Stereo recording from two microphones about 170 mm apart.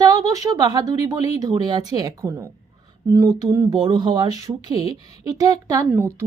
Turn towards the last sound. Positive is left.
turn(degrees=-15)  # may be behind; listen again after turning